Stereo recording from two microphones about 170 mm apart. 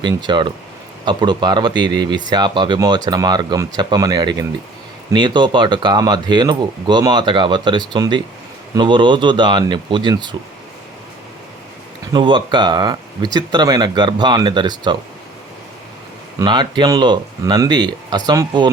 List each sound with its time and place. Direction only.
0.0 s speech: 25° right (ahead or behind)
12.1 s speech: 30° right (ahead or behind)
16.4 s speech: 25° right (ahead or behind)